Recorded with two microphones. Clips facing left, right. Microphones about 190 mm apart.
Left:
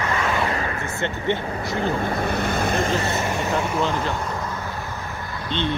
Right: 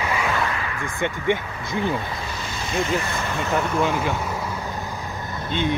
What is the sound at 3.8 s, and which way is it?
Speech, 10° right (ahead or behind).